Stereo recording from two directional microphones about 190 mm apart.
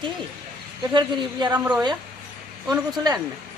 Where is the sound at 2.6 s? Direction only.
20° right (ahead or behind).